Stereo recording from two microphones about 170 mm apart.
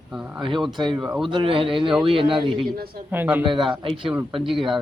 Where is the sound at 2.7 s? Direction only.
65° right (ahead or behind).